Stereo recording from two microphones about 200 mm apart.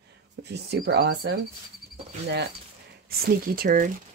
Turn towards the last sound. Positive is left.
turn(degrees=-45)  # may be behind; listen again after turning